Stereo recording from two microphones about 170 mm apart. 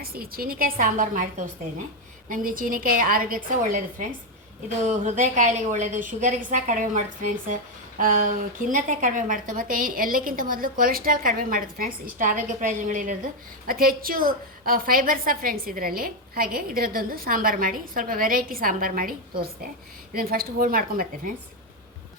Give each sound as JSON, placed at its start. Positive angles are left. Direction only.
{"t": 0.0, "sound": "a woman's voice", "side_deg": -60}